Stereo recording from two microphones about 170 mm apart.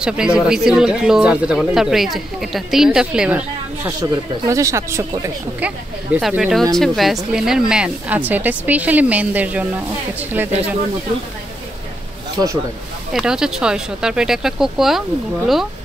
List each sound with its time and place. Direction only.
0.0 s speech: 5° right (ahead or behind)
4.0 s a woman's voice: 20° right (ahead or behind)
6.1 s a woman's voice: 5° right (ahead or behind)
13.1 s speech: 5° right (ahead or behind)